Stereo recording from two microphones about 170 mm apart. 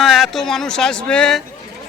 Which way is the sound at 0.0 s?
Centre (ahead or behind).